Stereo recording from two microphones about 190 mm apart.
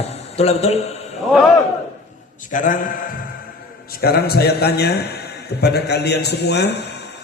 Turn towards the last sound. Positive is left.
turn(degrees=60)  # may be behind; listen again after turning